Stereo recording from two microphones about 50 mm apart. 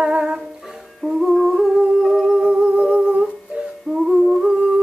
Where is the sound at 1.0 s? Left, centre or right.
Centre.